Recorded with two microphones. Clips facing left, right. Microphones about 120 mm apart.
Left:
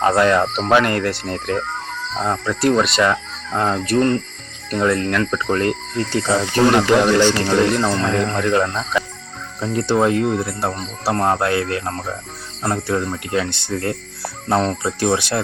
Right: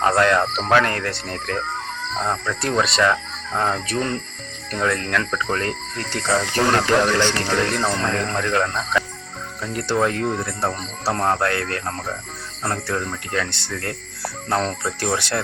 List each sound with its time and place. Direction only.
0.0 s speech: 5° left (ahead or behind)
1.5 s speech: 15° left (ahead or behind)
9.6 s speech: 20° left (ahead or behind); by 12.1 s 5° left (ahead or behind)
12.9 s speech: 15° left (ahead or behind)
14.8 s speech: 20° left (ahead or behind)